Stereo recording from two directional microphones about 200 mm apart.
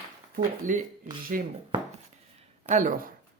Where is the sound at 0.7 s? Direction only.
40° right (ahead or behind).